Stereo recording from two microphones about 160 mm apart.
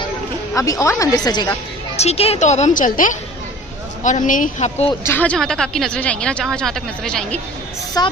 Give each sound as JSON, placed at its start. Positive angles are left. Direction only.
{"t": 0.5, "sound": "speech", "side_deg": 20}
{"t": 2.0, "sound": "a woman's voice", "side_deg": 40}
{"t": 5.0, "sound": "speech", "side_deg": 10}
{"t": 8.0, "sound": "speech", "side_deg": 25}